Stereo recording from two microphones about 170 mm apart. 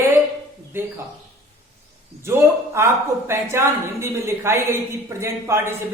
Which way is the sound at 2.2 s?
15° right (ahead or behind).